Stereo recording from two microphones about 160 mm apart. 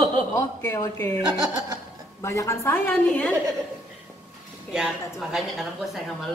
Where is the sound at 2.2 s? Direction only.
20° left (ahead or behind).